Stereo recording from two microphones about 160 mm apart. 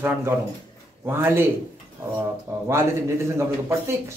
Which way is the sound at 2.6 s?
15° right (ahead or behind).